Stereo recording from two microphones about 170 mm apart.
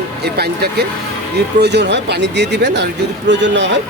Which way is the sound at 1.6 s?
85° right.